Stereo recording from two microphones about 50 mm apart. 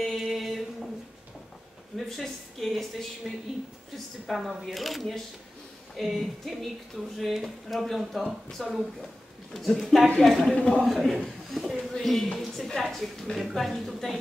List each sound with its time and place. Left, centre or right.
0.0 s a sound: centre
2.0 s speech: centre
10.5 s a man's voice: centre
10.8 s speech: centre
11.5 s a sound: centre
11.9 s speech: centre